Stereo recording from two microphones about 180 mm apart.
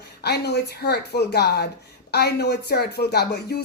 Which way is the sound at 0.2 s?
65° left (ahead or behind).